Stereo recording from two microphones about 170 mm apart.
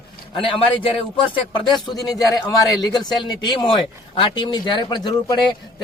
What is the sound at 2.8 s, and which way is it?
A man's voice, 25° left (ahead or behind).